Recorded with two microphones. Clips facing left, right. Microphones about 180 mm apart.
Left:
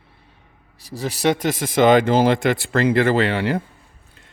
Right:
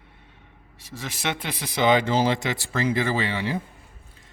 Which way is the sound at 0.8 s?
35° left (ahead or behind).